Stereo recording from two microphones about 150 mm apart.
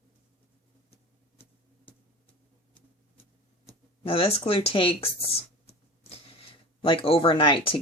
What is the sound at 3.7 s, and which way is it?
Speech, 40° left (ahead or behind).